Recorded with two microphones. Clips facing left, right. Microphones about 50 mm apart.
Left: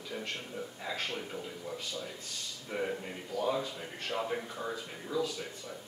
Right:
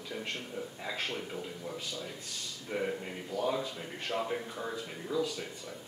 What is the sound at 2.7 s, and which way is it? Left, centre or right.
A man's voice, centre.